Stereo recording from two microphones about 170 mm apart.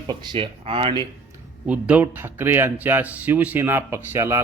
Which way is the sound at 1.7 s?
10° right (ahead or behind).